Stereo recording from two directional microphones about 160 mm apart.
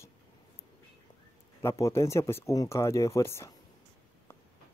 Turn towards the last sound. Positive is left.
turn(degrees=15)  # may be behind; listen again after turning